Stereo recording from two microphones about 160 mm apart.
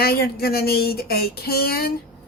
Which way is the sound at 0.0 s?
75° left (ahead or behind).